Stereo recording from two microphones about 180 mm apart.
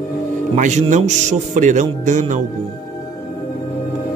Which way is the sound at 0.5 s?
45° right (ahead or behind).